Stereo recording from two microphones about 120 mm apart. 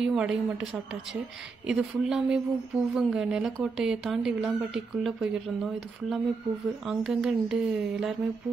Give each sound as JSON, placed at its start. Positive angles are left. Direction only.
{"t": 0.0, "sound": "speech", "side_deg": -5}
{"t": 1.7, "sound": "speech", "side_deg": -5}
{"t": 6.9, "sound": "speech", "side_deg": -5}